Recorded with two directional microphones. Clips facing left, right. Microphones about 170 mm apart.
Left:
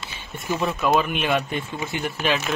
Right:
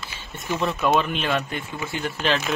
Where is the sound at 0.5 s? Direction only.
Centre (ahead or behind).